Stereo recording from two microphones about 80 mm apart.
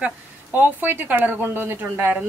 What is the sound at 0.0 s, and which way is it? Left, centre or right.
Speech, right.